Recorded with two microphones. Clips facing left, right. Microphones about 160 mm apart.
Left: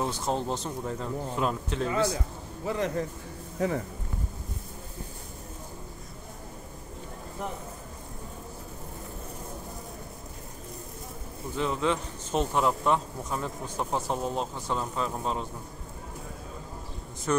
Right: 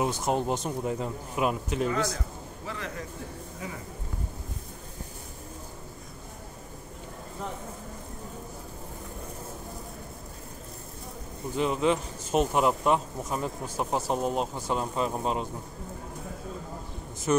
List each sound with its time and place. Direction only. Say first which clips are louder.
0.0 s speech: right 2 dB; 15° right (ahead or behind)
1.9 s a man's voice: left 2 dB; 10° left (ahead or behind)
11.5 s speech: right 2 dB; 10° right (ahead or behind)
17.3 s speech: right 2 dB; 10° right (ahead or behind)